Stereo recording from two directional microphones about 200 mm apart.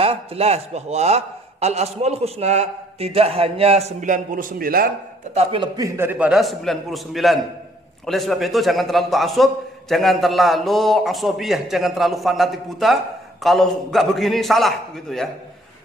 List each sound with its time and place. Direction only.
0.0 s a man's voice: 30° right (ahead or behind); by 4.9 s 45° right (ahead or behind)
5.3 s a man's voice: 30° right (ahead or behind); by 15.2 s centre (ahead or behind)